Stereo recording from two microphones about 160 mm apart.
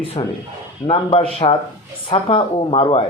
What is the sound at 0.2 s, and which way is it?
A man's voice, 30° left (ahead or behind).